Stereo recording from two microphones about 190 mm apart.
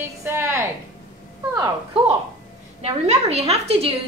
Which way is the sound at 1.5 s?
20° right (ahead or behind).